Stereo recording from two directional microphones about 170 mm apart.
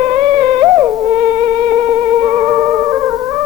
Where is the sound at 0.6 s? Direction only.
20° right (ahead or behind).